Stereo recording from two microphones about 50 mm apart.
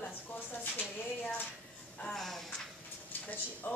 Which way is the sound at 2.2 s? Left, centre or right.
Centre.